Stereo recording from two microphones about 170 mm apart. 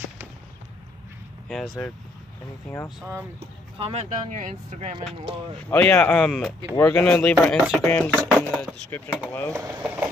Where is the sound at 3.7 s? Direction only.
35° right (ahead or behind).